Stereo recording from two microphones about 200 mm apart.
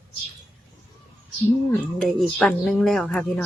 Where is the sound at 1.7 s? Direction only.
5° left (ahead or behind).